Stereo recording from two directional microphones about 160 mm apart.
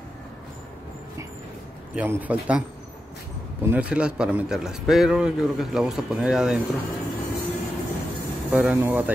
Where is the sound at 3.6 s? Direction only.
10° right (ahead or behind).